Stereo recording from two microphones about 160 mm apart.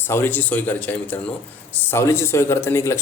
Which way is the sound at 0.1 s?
15° left (ahead or behind).